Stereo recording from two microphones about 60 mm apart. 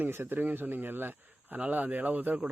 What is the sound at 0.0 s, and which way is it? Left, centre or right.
Speech, right.